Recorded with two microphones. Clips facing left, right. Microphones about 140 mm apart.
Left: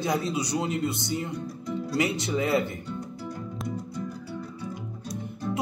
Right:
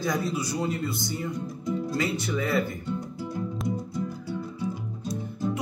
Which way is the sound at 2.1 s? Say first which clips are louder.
Left 1 dB; 25° left (ahead or behind).